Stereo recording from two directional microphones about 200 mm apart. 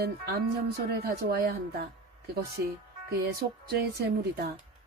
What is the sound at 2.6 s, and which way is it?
Speech, 55° right (ahead or behind).